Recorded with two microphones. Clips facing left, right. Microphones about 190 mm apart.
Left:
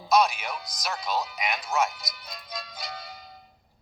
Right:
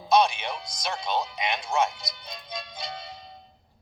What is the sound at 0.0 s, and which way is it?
Speech, 30° right (ahead or behind).